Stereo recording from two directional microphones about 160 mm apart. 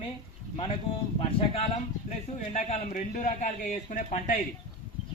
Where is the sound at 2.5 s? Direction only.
50° left (ahead or behind).